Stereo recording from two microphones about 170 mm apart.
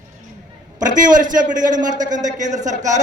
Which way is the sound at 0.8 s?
50° right (ahead or behind).